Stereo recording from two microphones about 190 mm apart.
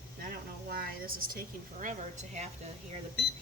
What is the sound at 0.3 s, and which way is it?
Speech, 50° right (ahead or behind).